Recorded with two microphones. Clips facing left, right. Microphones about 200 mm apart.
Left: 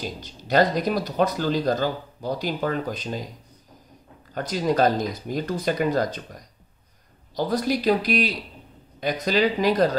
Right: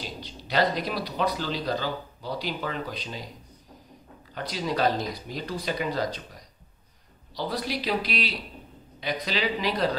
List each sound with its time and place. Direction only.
0.0 s speech: 45° left (ahead or behind)
4.3 s speech: 45° left (ahead or behind)